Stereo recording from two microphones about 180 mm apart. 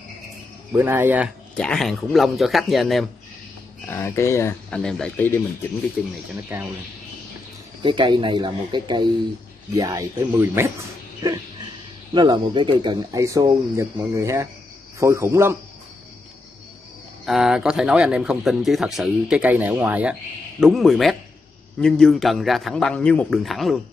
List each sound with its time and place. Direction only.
0.7 s speech: 10° right (ahead or behind)
1.6 s speech: 5° left (ahead or behind)
3.8 s speech: 15° left (ahead or behind)
4.6 s speech: 5° left (ahead or behind)
6.5 s speech: 10° right (ahead or behind)
7.8 s speech: 25° right (ahead or behind)
11.2 s speech: 25° right (ahead or behind)
17.3 s speech: centre (ahead or behind)